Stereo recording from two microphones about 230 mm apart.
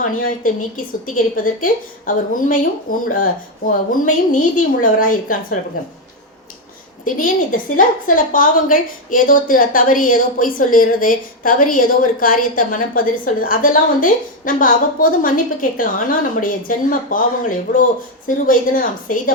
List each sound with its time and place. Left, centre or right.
0.0 s a woman's voice: left
1.6 s a woman's voice: left
7.0 s a woman's voice: left
18.3 s a woman's voice: left